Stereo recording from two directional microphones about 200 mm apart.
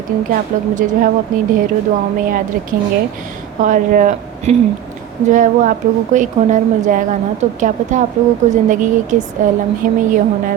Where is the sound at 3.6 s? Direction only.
40° right (ahead or behind).